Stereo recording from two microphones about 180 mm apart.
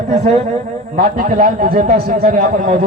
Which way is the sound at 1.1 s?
55° right (ahead or behind).